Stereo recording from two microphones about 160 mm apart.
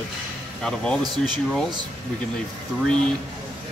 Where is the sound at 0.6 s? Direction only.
5° left (ahead or behind).